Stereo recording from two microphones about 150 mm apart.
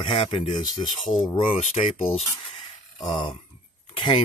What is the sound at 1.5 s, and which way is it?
Speech, 40° left (ahead or behind).